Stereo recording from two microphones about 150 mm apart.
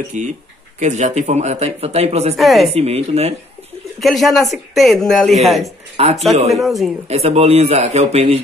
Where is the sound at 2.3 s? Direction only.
Centre (ahead or behind).